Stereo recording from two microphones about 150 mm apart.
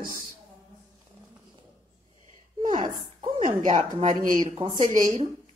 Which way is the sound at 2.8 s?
30° right (ahead or behind).